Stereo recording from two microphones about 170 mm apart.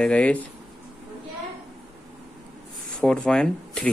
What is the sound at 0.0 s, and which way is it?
Speech, 5° left (ahead or behind).